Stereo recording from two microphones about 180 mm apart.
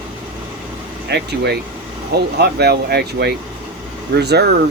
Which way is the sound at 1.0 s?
65° right (ahead or behind).